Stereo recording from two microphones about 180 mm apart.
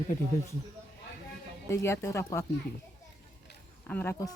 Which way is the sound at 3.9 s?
10° left (ahead or behind).